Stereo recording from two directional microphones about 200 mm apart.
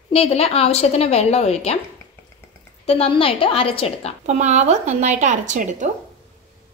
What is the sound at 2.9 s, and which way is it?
A woman's voice, 30° left (ahead or behind).